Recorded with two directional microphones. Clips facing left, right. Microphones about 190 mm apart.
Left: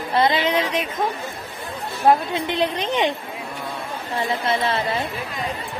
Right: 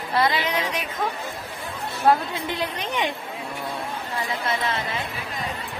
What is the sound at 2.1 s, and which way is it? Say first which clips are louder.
A woman's voice: left 3 dB; 20° left (ahead or behind).